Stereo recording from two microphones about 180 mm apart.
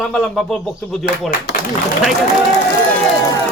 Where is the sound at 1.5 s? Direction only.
80° left.